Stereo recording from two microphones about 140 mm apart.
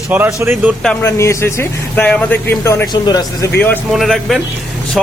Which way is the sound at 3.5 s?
15° left (ahead or behind).